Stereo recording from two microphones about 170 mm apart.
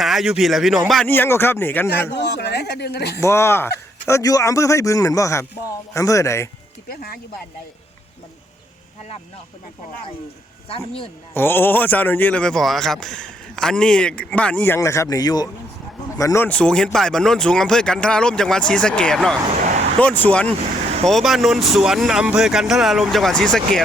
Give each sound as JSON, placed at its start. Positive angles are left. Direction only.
{"t": 0.0, "sound": "speech", "side_deg": 0}
{"t": 1.0, "sound": "speech", "side_deg": 10}
{"t": 1.9, "sound": "speech", "side_deg": 85}
{"t": 3.2, "sound": "speech", "side_deg": 15}
{"t": 6.8, "sound": "speech", "side_deg": 65}
{"t": 10.7, "sound": "a man's voice", "side_deg": 35}
{"t": 11.3, "sound": "speech", "side_deg": 10}